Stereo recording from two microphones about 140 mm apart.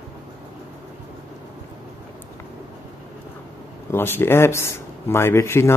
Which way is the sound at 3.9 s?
15° left (ahead or behind).